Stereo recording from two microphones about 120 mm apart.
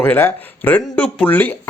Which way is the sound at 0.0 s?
20° left (ahead or behind).